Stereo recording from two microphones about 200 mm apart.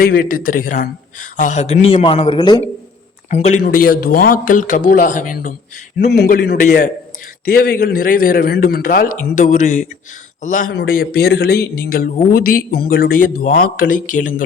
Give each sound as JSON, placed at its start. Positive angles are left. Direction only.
{"t": 0.0, "sound": "a man's voice", "side_deg": 45}
{"t": 3.2, "sound": "speech", "side_deg": 35}
{"t": 6.1, "sound": "speech", "side_deg": 50}